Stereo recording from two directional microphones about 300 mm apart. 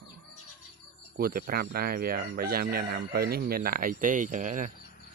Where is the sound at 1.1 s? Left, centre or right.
Right.